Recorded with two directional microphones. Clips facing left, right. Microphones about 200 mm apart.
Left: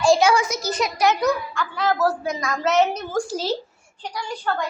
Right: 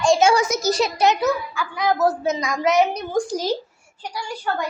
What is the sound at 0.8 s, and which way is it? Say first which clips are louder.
Speech: left 1 dB; 25° right (ahead or behind).